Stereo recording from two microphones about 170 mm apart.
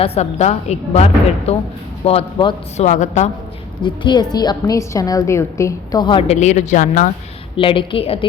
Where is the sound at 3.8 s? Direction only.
25° left (ahead or behind); by 7.1 s 50° left (ahead or behind).